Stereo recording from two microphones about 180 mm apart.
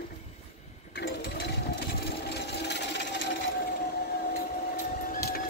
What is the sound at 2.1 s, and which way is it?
Wood, 65° left (ahead or behind).